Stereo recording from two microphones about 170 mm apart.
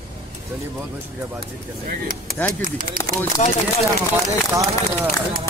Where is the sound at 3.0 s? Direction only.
55° right (ahead or behind).